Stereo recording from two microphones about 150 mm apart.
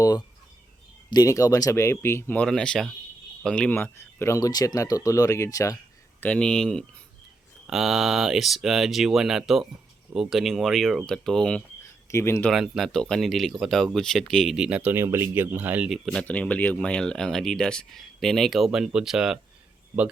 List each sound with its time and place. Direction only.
1.1 s speech: 20° left (ahead or behind)
6.1 s speech: 10° left (ahead or behind)
12.1 s speech: 15° left (ahead or behind)
12.5 s speech: centre (ahead or behind)
16.2 s speech: 10° left (ahead or behind)